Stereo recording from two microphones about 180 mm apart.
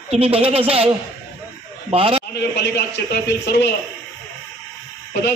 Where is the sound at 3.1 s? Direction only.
70° left (ahead or behind).